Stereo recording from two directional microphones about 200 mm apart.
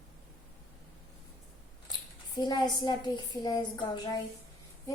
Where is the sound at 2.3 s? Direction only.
20° left (ahead or behind).